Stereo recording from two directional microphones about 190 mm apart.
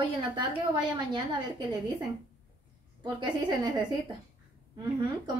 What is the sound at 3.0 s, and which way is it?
Speech, 25° right (ahead or behind).